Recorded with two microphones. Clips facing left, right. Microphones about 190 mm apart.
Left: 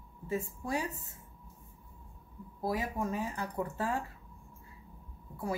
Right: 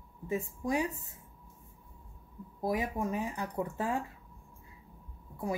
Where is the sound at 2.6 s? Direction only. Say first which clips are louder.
Right 2 dB; 20° right (ahead or behind).